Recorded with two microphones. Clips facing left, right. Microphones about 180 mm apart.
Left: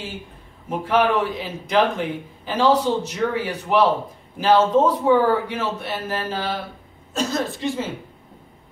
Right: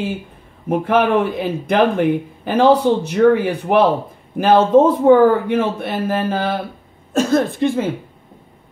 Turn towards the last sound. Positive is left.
turn(degrees=-55)  # may be behind; listen again after turning